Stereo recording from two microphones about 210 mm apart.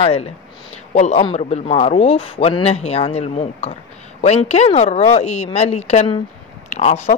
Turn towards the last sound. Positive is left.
turn(degrees=30)  # may be behind; listen again after turning